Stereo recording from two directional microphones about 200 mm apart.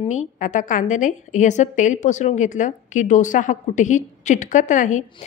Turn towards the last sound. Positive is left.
turn(degrees=40)  # may be behind; listen again after turning